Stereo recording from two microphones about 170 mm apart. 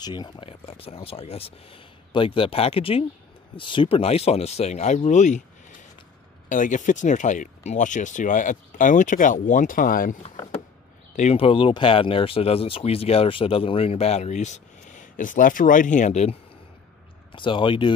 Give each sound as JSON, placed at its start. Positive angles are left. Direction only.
{"t": 0.0, "sound": "speech", "side_deg": 25}
{"t": 11.1, "sound": "speech", "side_deg": 35}
{"t": 17.3, "sound": "speech", "side_deg": 30}